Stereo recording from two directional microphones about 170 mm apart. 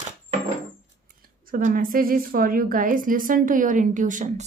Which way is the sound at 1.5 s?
55° right (ahead or behind).